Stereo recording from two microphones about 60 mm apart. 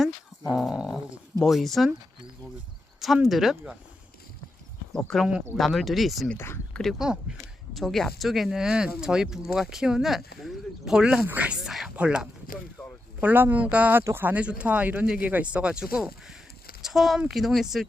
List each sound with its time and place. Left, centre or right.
0.0 s speech: centre
3.2 s speech: centre
4.9 s speech: centre
6.3 s speech: left
7.0 s speech: centre
7.8 s speech: centre
10.9 s speech: centre
11.3 s speech: right
11.6 s speech: centre
11.9 s speech: centre
12.8 s a sound: left
13.1 s speech: right
14.1 s speech: right
14.3 s speech: right; by 17.8 s centre